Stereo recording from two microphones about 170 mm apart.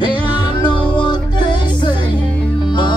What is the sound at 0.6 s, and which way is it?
Music, 25° left (ahead or behind).